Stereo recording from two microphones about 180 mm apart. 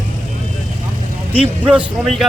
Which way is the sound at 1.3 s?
5° right (ahead or behind).